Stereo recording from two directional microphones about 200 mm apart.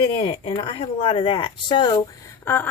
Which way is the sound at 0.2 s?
25° left (ahead or behind).